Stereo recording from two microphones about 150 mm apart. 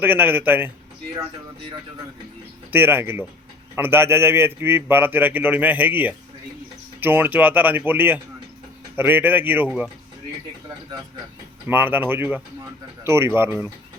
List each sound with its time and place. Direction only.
0.0 s speech: 15° right (ahead or behind)
2.7 s speech: 15° right (ahead or behind)
11.7 s speech: 15° right (ahead or behind)